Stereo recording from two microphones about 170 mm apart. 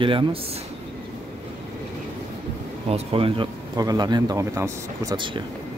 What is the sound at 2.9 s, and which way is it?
A man's voice, 35° right (ahead or behind).